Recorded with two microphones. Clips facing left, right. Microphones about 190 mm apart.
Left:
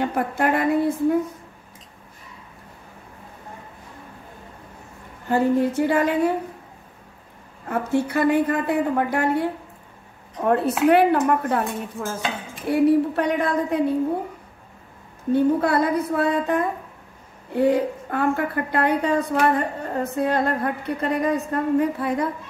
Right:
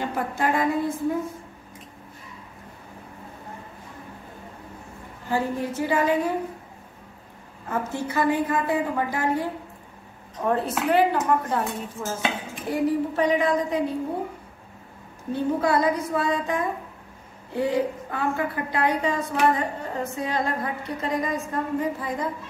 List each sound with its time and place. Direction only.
0.0 s a woman's voice: 60° left (ahead or behind)
5.3 s a woman's voice: 60° left (ahead or behind)
7.7 s a woman's voice: 65° left (ahead or behind)
10.5 s a woman's voice: 65° left (ahead or behind)
15.3 s a woman's voice: 60° left (ahead or behind)